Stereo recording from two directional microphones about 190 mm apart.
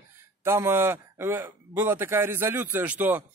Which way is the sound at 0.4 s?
15° right (ahead or behind).